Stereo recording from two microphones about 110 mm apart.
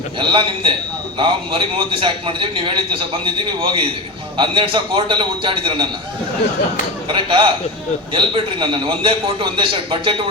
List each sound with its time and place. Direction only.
0.2 s a man's voice: 50° right (ahead or behind)
7.1 s a man's voice: 50° right (ahead or behind)